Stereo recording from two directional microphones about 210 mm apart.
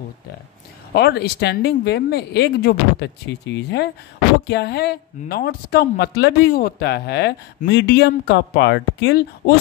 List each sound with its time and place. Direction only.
0.9 s speech: 50° left (ahead or behind)